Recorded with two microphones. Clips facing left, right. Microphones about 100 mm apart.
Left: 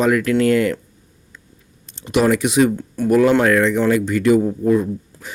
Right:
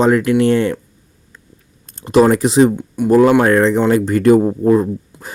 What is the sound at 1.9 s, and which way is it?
Speech, 35° right (ahead or behind).